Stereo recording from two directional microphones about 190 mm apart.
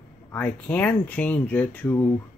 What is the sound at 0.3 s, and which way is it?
Speech, 5° left (ahead or behind).